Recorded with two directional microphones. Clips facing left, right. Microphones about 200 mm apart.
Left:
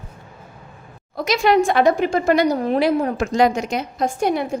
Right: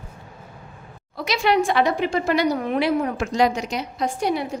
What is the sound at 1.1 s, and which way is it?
A woman's voice, 45° left (ahead or behind).